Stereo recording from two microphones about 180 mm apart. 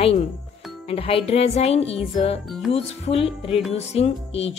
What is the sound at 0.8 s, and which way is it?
A woman's voice, 30° left (ahead or behind).